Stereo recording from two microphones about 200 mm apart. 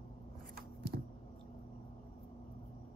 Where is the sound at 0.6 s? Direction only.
55° right (ahead or behind).